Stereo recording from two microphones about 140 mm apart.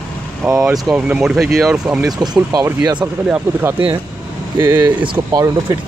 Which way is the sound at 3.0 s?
10° right (ahead or behind).